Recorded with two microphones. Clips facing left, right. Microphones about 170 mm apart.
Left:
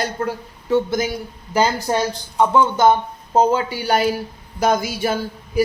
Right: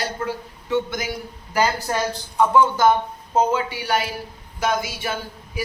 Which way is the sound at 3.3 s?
35° left (ahead or behind).